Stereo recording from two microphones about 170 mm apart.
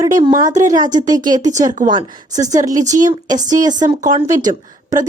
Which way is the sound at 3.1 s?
25° right (ahead or behind).